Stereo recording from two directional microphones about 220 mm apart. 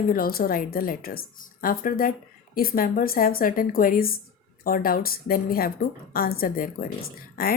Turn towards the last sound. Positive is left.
turn(degrees=45)  # may be behind; listen again after turning